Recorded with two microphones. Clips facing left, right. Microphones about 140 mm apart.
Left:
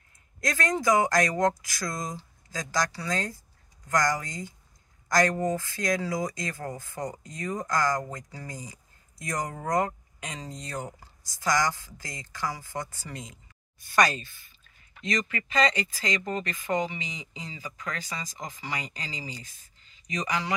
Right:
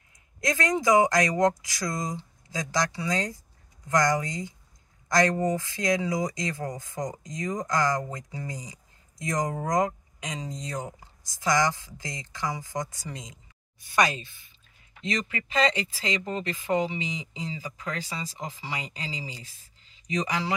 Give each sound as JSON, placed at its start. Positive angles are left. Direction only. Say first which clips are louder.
{"t": 0.4, "sound": "speech", "louder": "right 2 dB", "side_deg": -20}